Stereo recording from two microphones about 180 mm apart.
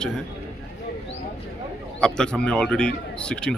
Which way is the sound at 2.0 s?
5° left (ahead or behind).